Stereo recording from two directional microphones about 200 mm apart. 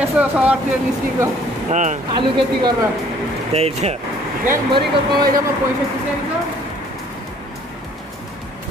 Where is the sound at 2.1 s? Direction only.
25° right (ahead or behind).